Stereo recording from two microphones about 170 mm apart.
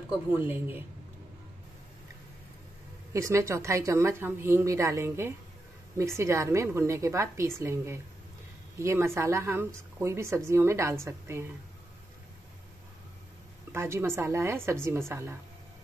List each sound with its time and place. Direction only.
0.4 s speech: 10° right (ahead or behind)
3.1 s speech: 20° right (ahead or behind)
13.7 s speech: 15° right (ahead or behind)